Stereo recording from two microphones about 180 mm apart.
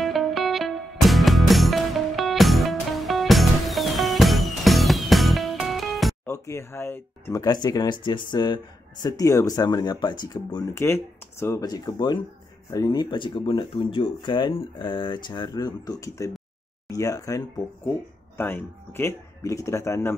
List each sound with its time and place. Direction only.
0.0 s music: centre (ahead or behind)
6.2 s speech: 15° left (ahead or behind)
18.4 s speech: 10° left (ahead or behind)